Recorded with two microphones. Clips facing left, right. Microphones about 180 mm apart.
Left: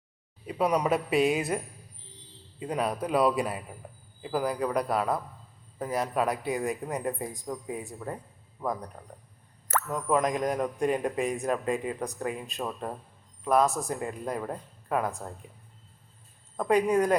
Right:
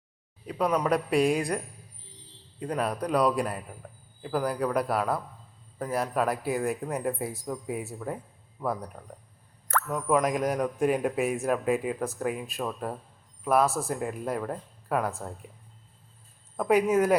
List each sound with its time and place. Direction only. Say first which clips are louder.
0.4 s speech: even; 5° left (ahead or behind)
16.6 s speech: right 1 dB; 5° right (ahead or behind)